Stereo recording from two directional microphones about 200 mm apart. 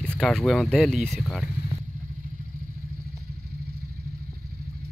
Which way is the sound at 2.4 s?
45° right (ahead or behind).